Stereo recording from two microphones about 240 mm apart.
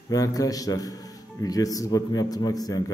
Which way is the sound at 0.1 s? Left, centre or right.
Centre.